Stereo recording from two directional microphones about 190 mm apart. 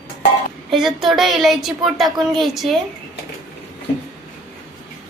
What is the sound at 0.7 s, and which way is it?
A woman's voice, centre (ahead or behind).